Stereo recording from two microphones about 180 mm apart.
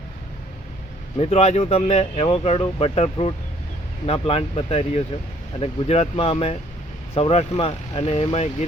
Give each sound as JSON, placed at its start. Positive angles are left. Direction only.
{"t": 1.2, "sound": "speech", "side_deg": 35}